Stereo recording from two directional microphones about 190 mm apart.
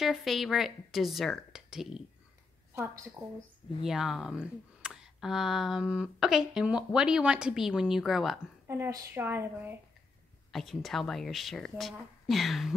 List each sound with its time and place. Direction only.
0.0 s speech: centre (ahead or behind)
1.5 s a sound: centre (ahead or behind)
2.7 s a woman's voice: 15° right (ahead or behind)
3.8 s speech: centre (ahead or behind)
8.6 s speech: 10° right (ahead or behind)
10.5 s speech: centre (ahead or behind)